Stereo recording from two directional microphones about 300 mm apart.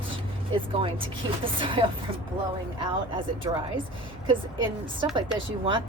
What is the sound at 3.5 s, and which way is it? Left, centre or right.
A woman's voice, centre.